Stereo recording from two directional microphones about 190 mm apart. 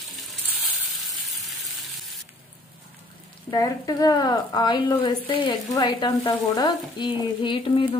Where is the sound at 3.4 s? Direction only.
20° left (ahead or behind).